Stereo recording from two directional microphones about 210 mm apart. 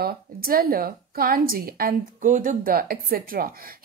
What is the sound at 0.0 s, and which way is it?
A woman's voice, 45° right (ahead or behind).